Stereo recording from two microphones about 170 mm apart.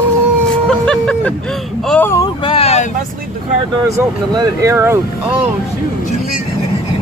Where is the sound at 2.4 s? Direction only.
30° left (ahead or behind).